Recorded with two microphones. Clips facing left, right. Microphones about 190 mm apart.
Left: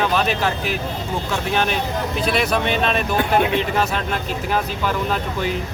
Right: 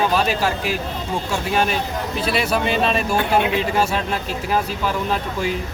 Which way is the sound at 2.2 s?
5° right (ahead or behind).